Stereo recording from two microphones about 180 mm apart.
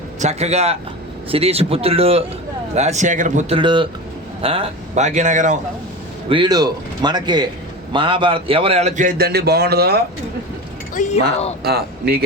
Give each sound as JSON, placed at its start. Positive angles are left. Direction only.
{"t": 0.2, "sound": "a man's voice", "side_deg": -40}
{"t": 3.6, "sound": "a man's voice", "side_deg": -25}
{"t": 6.2, "sound": "a man's voice", "side_deg": -25}
{"t": 10.9, "sound": "speech", "side_deg": 40}
{"t": 11.6, "sound": "speech", "side_deg": -60}